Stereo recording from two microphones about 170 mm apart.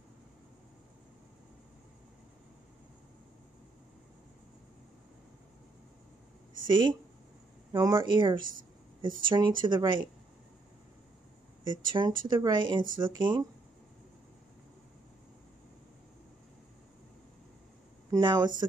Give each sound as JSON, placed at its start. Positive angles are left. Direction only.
{"t": 6.7, "sound": "speech", "side_deg": -30}
{"t": 11.6, "sound": "speech", "side_deg": -25}
{"t": 18.1, "sound": "speech", "side_deg": -25}